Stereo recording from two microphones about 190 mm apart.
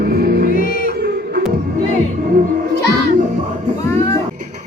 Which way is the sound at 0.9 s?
55° right (ahead or behind).